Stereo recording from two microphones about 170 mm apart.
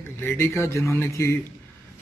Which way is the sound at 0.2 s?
15° left (ahead or behind).